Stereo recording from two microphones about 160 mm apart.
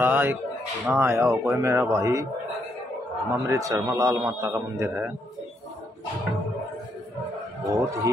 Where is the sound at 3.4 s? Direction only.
20° right (ahead or behind).